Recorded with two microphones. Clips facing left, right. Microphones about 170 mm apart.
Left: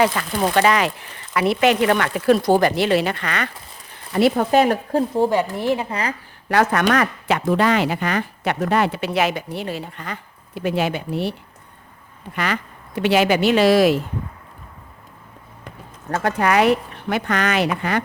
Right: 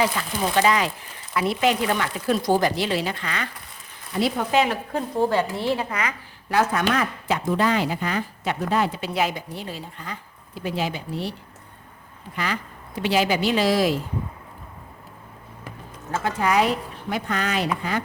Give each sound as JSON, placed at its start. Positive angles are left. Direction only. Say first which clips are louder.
{"t": 0.0, "sound": "speech", "louder": "left 5 dB", "side_deg": 65}
{"t": 4.5, "sound": "speech", "louder": "left 5 dB", "side_deg": 45}
{"t": 5.3, "sound": "a woman's voice", "louder": "left 3 dB", "side_deg": 15}
{"t": 6.5, "sound": "speech", "louder": "left 4 dB", "side_deg": 70}
{"t": 16.1, "sound": "speech", "louder": "left 3 dB", "side_deg": 65}